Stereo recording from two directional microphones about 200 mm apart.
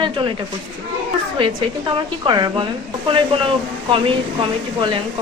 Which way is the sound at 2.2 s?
20° right (ahead or behind).